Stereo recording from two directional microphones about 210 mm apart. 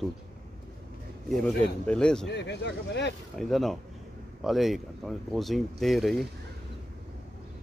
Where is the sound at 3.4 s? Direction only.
Centre (ahead or behind).